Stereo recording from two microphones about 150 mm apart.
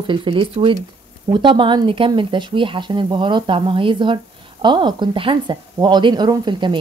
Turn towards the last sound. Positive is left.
turn(degrees=-30)  # may be behind; listen again after turning